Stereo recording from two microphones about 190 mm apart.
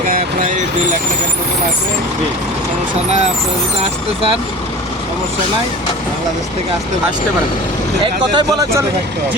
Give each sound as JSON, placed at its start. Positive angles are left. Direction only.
{"t": 8.0, "sound": "speech", "side_deg": -25}